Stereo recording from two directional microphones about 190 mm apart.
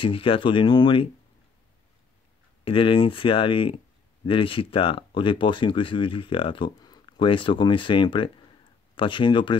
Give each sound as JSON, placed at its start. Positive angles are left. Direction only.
{"t": 0.0, "sound": "speech", "side_deg": 30}
{"t": 2.6, "sound": "speech", "side_deg": 30}